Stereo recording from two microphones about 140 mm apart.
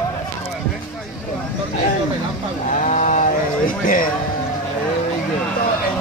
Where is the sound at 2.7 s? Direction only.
65° left (ahead or behind).